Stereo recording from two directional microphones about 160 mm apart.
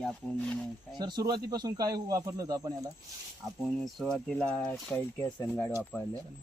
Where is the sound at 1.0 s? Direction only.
25° right (ahead or behind).